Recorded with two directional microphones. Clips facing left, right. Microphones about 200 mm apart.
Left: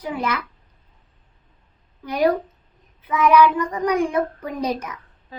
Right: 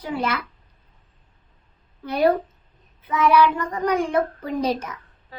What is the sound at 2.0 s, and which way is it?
A child's voice, 15° left (ahead or behind).